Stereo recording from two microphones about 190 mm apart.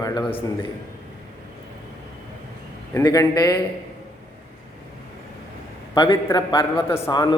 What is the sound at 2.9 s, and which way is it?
Speech, 20° left (ahead or behind).